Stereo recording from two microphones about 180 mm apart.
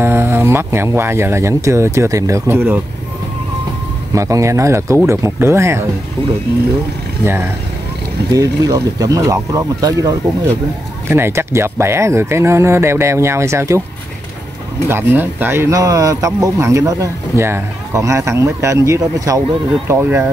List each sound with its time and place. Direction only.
0.0 s speech: 15° right (ahead or behind)
4.1 s speech: 15° right (ahead or behind)
8.3 s speech: 20° right (ahead or behind)
14.9 s speech: 10° right (ahead or behind)